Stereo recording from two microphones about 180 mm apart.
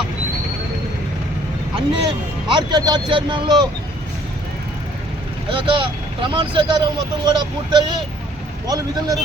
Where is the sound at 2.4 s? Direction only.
25° right (ahead or behind).